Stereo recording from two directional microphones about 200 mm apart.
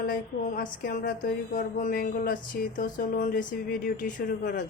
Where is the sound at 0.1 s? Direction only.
45° left (ahead or behind).